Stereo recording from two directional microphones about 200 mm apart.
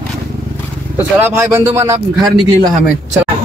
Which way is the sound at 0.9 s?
10° right (ahead or behind).